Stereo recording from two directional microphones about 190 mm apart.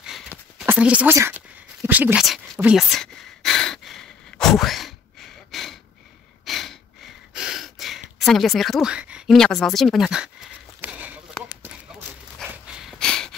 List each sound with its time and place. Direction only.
0.7 s speech: 5° right (ahead or behind)
1.9 s a sound: 10° right (ahead or behind)
12.4 s snort: 5° right (ahead or behind)